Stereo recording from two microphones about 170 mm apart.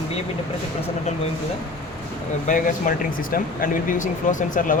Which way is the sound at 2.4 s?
55° left (ahead or behind).